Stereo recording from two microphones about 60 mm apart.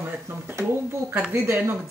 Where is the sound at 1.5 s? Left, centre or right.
Right.